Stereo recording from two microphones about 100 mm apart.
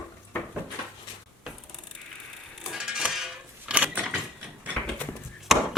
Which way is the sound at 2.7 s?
5° right (ahead or behind).